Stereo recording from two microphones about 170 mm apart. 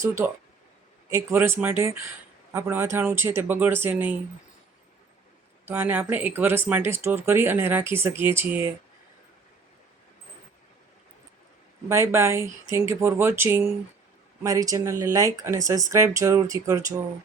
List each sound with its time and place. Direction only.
0.0 s speech: 15° right (ahead or behind)
5.6 s speech: 10° right (ahead or behind)
11.9 s speech: 15° right (ahead or behind)